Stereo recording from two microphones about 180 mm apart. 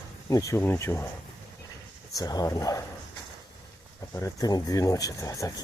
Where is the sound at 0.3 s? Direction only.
15° left (ahead or behind).